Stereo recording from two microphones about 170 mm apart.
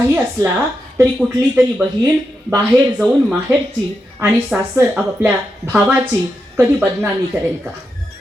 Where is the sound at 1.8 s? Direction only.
15° right (ahead or behind).